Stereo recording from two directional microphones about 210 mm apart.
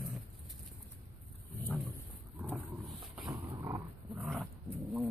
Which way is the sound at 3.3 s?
20° right (ahead or behind).